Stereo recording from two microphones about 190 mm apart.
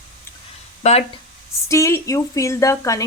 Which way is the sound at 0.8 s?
40° left (ahead or behind).